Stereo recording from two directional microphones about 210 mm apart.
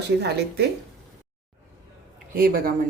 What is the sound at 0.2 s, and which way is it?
Speech, 50° right (ahead or behind).